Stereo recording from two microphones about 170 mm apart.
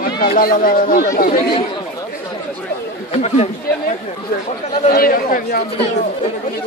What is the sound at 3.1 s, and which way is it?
Speech, 40° left (ahead or behind).